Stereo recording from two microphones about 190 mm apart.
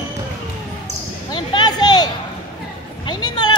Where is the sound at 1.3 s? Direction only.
20° left (ahead or behind).